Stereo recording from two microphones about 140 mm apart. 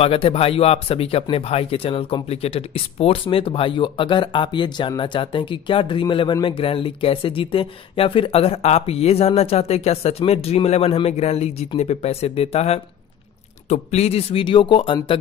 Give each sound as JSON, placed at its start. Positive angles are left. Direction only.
{"t": 0.0, "sound": "speech", "side_deg": 45}